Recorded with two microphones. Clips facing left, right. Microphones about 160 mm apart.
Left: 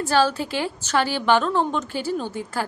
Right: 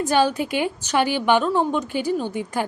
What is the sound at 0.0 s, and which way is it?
A woman's voice, 15° right (ahead or behind).